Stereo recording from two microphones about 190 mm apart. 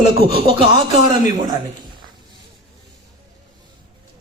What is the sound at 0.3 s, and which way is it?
Speech, 30° right (ahead or behind).